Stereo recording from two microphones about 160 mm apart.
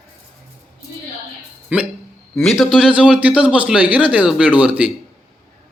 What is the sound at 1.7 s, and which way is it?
A man's voice, 5° right (ahead or behind).